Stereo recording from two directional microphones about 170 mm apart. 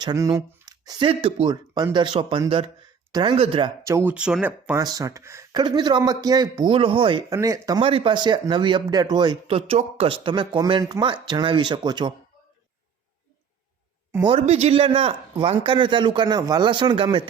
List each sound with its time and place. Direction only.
0.0 s a man's voice: 20° right (ahead or behind)
3.8 s speech: 15° right (ahead or behind)
4.8 s a man's voice: 20° right (ahead or behind)
7.8 s a man's voice: 30° right (ahead or behind)
14.3 s speech: 40° right (ahead or behind)